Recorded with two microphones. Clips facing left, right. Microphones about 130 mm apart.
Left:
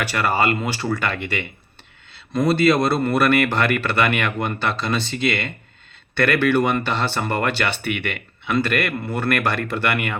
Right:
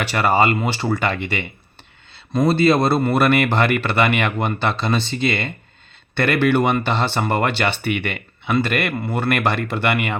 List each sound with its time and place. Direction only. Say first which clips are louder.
0.0 s speech: right 3 dB; 25° right (ahead or behind)
2.5 s speech: right 1 dB; 30° right (ahead or behind)